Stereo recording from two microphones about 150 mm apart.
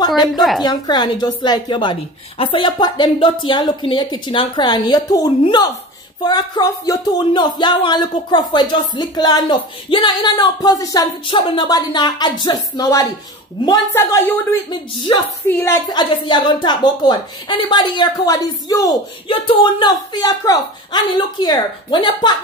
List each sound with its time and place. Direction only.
0.0 s a woman's voice: 25° left (ahead or behind)
0.3 s a woman's voice: centre (ahead or behind)
0.6 s speech: 30° left (ahead or behind)
13.9 s speech: 15° left (ahead or behind)
14.7 s speech: 30° left (ahead or behind)
15.4 s speech: 15° left (ahead or behind)
15.9 s speech: 30° left (ahead or behind)
19.2 s speech: 35° left (ahead or behind)